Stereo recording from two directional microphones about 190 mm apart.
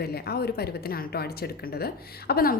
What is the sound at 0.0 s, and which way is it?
A woman's voice, 55° left (ahead or behind).